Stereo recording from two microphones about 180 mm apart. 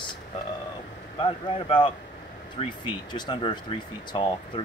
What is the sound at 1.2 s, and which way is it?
Speech, 25° left (ahead or behind).